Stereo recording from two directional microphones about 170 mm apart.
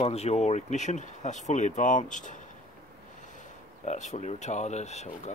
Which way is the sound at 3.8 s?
45° left (ahead or behind).